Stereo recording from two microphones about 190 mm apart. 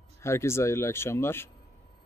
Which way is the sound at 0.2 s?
15° left (ahead or behind).